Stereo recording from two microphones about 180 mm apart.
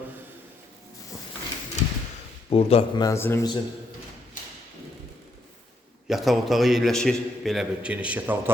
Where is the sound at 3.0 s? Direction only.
15° left (ahead or behind).